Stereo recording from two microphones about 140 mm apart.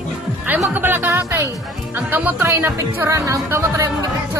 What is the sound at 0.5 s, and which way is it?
Speech, 15° right (ahead or behind).